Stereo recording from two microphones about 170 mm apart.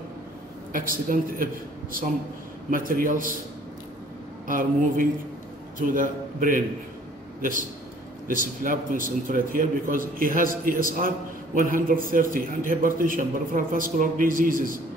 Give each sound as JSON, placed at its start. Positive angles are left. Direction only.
{"t": 0.7, "sound": "a man's voice", "side_deg": -55}
{"t": 4.5, "sound": "a man's voice", "side_deg": -55}
{"t": 8.3, "sound": "a man's voice", "side_deg": -50}